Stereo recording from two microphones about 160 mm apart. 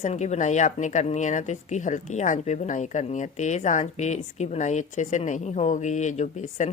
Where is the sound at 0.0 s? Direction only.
45° left (ahead or behind).